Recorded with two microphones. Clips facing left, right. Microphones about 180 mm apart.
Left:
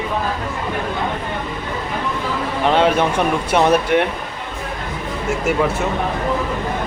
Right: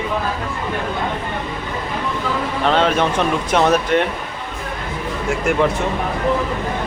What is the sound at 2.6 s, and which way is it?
A man's voice, 15° left (ahead or behind).